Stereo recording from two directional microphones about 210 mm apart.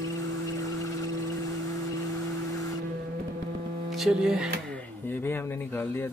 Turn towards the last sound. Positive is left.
turn(degrees=10)  # may be behind; listen again after turning